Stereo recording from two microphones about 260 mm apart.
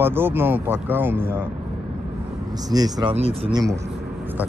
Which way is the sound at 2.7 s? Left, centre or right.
Centre.